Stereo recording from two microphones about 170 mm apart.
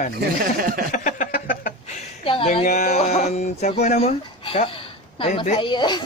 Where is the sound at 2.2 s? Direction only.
35° left (ahead or behind).